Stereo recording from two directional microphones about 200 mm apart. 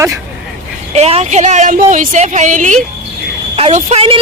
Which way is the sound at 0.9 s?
30° right (ahead or behind).